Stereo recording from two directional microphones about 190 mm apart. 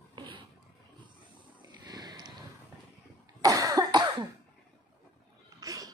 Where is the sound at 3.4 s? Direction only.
20° right (ahead or behind).